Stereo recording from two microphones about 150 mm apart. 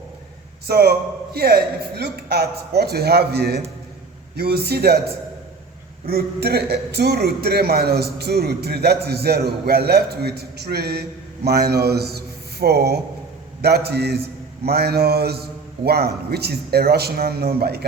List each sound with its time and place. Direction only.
0.7 s a man's voice: 90° right